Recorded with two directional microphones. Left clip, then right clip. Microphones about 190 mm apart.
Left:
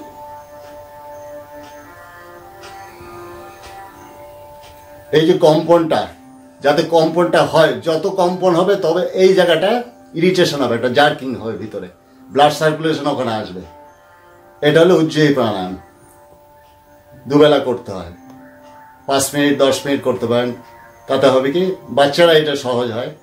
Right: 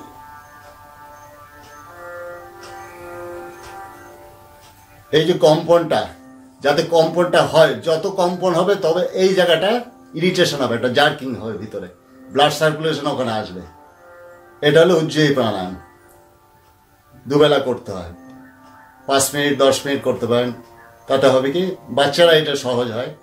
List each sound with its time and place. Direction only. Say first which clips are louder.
5.1 s speech: left 2 dB; 5° left (ahead or behind)
14.6 s speech: left 2 dB; 5° left (ahead or behind)
17.3 s speech: left 3 dB; 5° left (ahead or behind)
19.0 s speech: left 2 dB; 5° left (ahead or behind)